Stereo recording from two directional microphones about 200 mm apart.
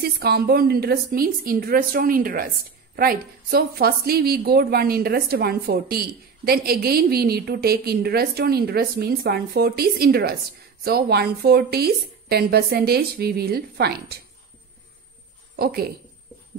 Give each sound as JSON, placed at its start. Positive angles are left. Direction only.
{"t": 0.0, "sound": "a woman's voice", "side_deg": -50}
{"t": 15.5, "sound": "speech", "side_deg": -50}